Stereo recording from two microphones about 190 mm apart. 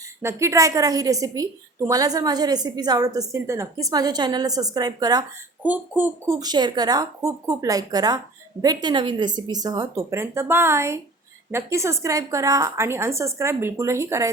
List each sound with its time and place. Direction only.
0.2 s a woman's voice: 15° right (ahead or behind)
5.6 s a woman's voice: 10° right (ahead or behind)
6.4 s a woman's voice: 20° right (ahead or behind)